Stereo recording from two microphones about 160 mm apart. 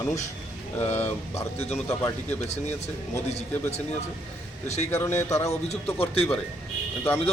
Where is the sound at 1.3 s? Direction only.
40° left (ahead or behind).